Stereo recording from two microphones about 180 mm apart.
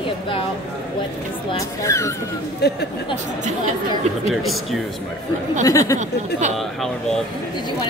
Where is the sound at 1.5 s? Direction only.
20° left (ahead or behind).